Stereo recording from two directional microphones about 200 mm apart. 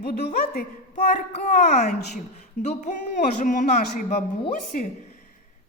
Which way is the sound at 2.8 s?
40° left (ahead or behind).